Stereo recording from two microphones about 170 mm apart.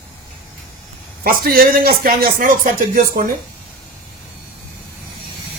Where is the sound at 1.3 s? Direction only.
60° right (ahead or behind).